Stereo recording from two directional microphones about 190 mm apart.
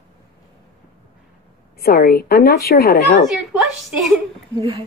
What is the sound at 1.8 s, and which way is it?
A woman's voice, 50° left (ahead or behind).